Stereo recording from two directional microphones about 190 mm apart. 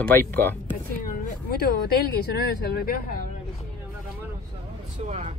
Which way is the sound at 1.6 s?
55° left (ahead or behind).